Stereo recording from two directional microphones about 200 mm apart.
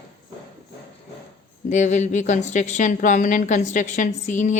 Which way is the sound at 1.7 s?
35° left (ahead or behind).